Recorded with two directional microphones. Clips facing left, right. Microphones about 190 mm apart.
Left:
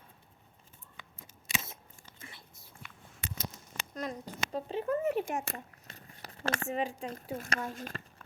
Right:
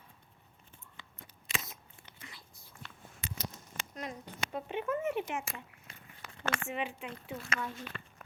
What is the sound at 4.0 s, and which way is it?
Speech, 35° left (ahead or behind).